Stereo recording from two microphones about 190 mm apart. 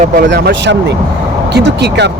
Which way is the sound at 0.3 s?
65° right (ahead or behind).